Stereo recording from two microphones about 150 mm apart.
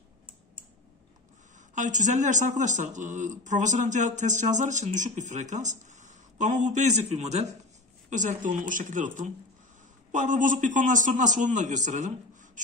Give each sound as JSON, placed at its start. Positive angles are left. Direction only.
{"t": 1.8, "sound": "a man's voice", "side_deg": -55}